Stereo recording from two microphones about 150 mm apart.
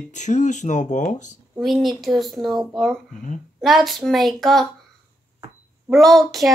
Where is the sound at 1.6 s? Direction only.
Centre (ahead or behind).